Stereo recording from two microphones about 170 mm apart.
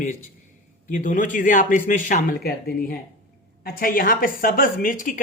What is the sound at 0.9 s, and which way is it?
A man's voice, 50° left (ahead or behind).